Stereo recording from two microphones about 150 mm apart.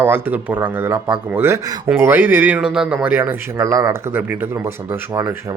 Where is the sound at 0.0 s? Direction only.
10° right (ahead or behind).